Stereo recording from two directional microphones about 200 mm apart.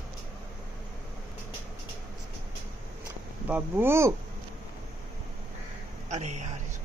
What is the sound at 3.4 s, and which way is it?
Speech, 10° right (ahead or behind).